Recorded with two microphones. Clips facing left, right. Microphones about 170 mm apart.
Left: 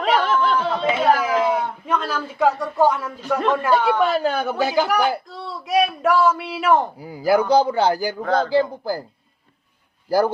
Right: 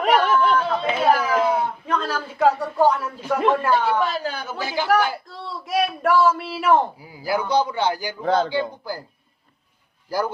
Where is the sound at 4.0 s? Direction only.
60° left (ahead or behind).